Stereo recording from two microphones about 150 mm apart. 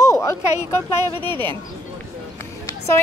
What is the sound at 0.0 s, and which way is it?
Speech, 20° left (ahead or behind).